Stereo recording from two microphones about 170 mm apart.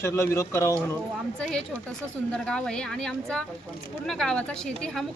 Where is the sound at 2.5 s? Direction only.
5° left (ahead or behind).